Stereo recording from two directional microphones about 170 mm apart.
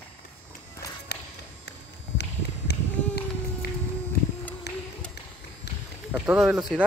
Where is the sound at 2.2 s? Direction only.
75° left (ahead or behind).